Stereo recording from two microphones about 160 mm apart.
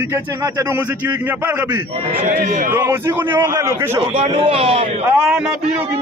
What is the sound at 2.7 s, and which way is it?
A man's voice, 15° right (ahead or behind).